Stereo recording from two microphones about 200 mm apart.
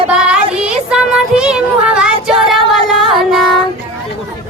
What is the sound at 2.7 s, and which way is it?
Singing, centre (ahead or behind).